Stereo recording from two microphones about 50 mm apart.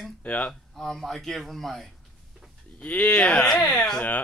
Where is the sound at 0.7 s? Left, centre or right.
Centre.